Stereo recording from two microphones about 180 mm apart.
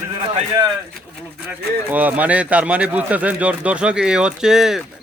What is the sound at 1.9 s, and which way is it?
Speech, 10° right (ahead or behind).